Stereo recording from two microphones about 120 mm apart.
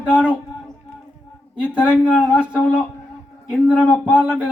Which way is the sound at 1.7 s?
10° right (ahead or behind).